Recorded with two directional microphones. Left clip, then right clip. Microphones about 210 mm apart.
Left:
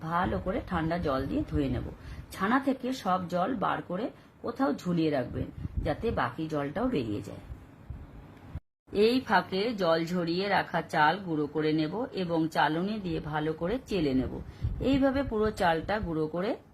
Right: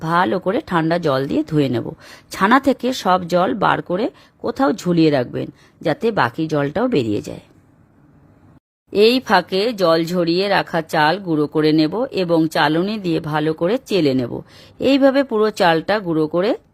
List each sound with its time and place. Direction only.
0.0 s speech: 50° right (ahead or behind)
8.9 s speech: 50° right (ahead or behind)